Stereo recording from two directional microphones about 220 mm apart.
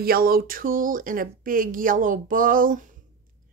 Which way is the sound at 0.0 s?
40° right (ahead or behind).